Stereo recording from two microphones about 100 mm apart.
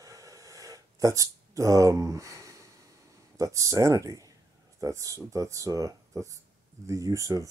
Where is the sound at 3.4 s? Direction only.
35° right (ahead or behind).